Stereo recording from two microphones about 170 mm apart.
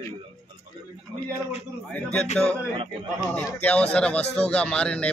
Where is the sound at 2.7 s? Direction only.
30° right (ahead or behind).